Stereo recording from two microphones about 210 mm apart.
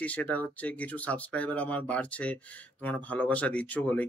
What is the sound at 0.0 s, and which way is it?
Speech, 5° left (ahead or behind).